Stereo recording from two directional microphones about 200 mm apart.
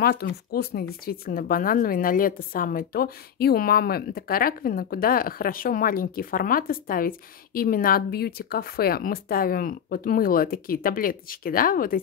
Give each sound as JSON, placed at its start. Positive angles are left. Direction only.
{"t": 0.0, "sound": "a woman's voice", "side_deg": 50}